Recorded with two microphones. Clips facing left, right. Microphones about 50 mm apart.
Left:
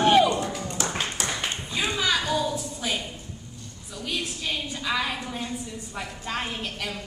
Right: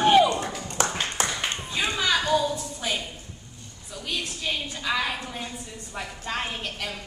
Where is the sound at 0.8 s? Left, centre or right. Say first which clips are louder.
Right 5 dB; right.